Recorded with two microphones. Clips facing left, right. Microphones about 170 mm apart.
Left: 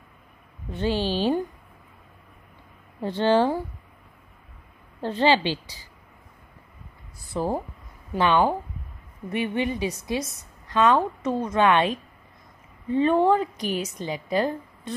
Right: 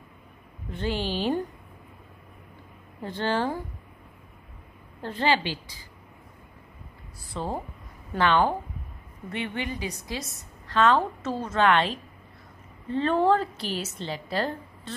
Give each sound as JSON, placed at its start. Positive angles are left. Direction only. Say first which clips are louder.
{"t": 0.7, "sound": "a woman's voice", "louder": "left 4 dB", "side_deg": 20}
{"t": 3.0, "sound": "a woman's voice", "louder": "left 7 dB", "side_deg": 20}
{"t": 5.0, "sound": "a woman's voice", "louder": "left 4 dB", "side_deg": 20}
{"t": 7.3, "sound": "a woman's voice", "louder": "left 5 dB", "side_deg": 5}